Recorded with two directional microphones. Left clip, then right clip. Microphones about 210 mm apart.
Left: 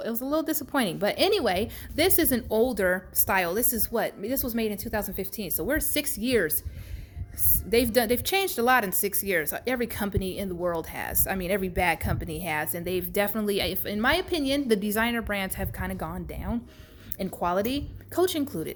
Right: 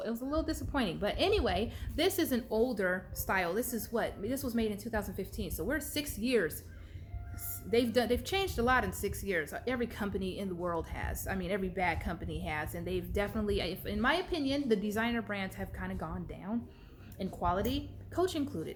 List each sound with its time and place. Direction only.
0.0 s speech: 40° left (ahead or behind)
7.7 s speech: 45° left (ahead or behind)